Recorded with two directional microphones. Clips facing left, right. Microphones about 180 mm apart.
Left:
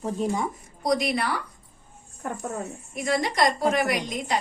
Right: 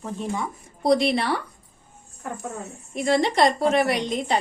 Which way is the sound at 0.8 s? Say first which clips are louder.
Right 4 dB; 30° right (ahead or behind).